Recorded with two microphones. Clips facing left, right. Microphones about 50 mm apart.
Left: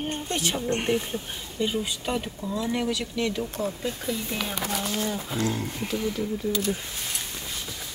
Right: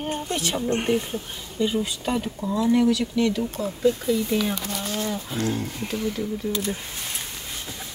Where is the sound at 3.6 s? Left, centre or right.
Left.